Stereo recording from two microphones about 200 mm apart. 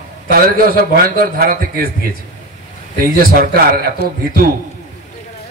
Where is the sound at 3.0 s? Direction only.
45° right (ahead or behind).